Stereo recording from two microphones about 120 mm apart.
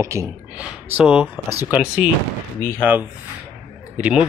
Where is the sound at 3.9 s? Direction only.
10° right (ahead or behind).